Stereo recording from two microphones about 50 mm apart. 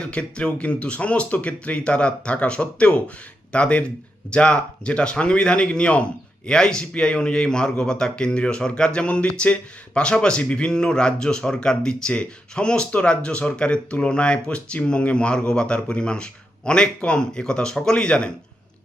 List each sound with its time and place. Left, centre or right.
0.0 s speech: left